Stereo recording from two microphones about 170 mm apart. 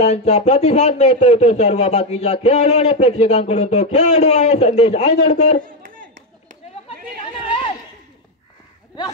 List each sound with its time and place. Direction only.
0.0 s speech: 40° left (ahead or behind)